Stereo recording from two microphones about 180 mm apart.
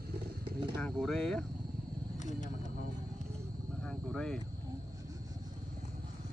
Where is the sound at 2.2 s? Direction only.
45° left (ahead or behind).